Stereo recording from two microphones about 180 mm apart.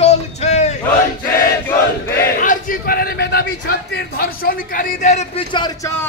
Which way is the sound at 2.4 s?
50° left (ahead or behind).